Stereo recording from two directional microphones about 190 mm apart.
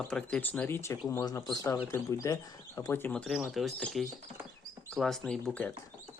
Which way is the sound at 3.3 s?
Centre (ahead or behind).